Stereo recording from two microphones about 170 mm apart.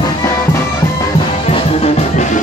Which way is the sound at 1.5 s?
35° left (ahead or behind).